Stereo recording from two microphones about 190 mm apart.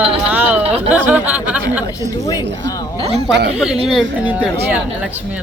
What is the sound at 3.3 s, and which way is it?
Speech, 65° right (ahead or behind).